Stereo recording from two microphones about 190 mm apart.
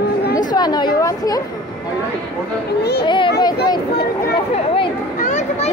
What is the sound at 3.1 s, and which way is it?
Speech, 25° left (ahead or behind).